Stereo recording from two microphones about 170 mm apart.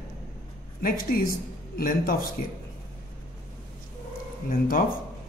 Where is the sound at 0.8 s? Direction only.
60° left (ahead or behind).